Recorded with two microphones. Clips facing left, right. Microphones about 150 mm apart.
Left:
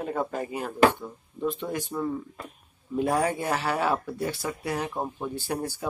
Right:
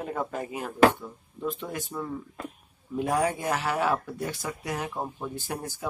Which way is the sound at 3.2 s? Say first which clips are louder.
Left 1 dB; 10° right (ahead or behind).